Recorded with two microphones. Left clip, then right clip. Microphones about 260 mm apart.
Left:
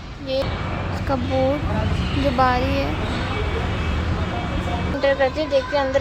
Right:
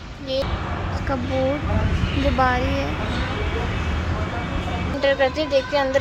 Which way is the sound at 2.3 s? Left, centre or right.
Centre.